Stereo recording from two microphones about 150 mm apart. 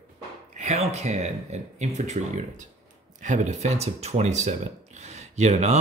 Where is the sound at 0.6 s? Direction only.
50° right (ahead or behind).